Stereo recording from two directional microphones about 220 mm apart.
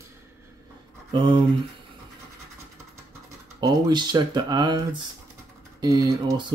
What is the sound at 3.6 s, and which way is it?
Speech, 20° right (ahead or behind).